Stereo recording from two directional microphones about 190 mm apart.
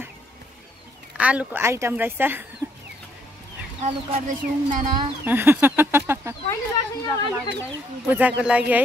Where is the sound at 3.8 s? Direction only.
40° right (ahead or behind).